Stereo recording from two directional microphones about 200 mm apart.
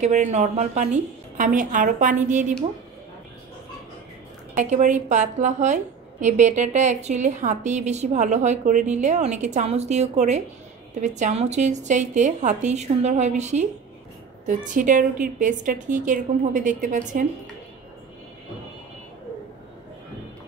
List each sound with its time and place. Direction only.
0.0 s a woman's voice: 35° right (ahead or behind)
4.6 s a woman's voice: 35° right (ahead or behind)
14.7 s a woman's voice: 40° right (ahead or behind)